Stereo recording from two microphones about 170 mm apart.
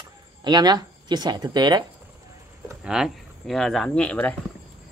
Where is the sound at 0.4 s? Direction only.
25° right (ahead or behind).